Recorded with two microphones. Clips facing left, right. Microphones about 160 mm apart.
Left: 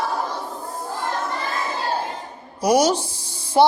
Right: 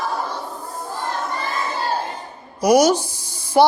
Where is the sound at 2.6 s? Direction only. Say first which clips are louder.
Right 3 dB; 30° left (ahead or behind).